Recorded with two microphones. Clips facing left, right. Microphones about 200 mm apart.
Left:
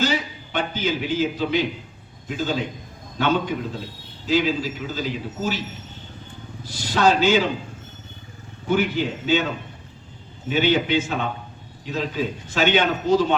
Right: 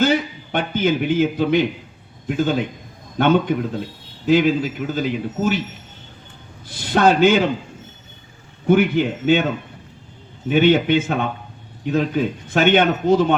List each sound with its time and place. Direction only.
0.0 s a man's voice: 55° right (ahead or behind)
6.7 s a man's voice: 55° right (ahead or behind)
8.6 s a man's voice: 55° right (ahead or behind)
10.5 s a man's voice: 55° right (ahead or behind)